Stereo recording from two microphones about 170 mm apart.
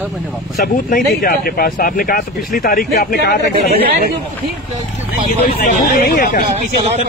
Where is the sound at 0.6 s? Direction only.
55° left (ahead or behind).